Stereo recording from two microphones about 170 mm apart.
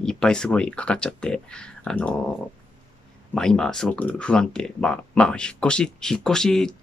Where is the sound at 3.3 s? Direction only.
5° left (ahead or behind).